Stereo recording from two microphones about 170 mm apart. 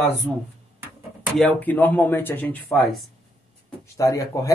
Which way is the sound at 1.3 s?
10° left (ahead or behind).